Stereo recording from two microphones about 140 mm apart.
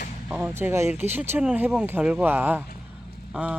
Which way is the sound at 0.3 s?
10° right (ahead or behind).